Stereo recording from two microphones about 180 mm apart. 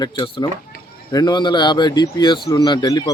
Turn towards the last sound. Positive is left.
turn(degrees=20)  # may be behind; listen again after turning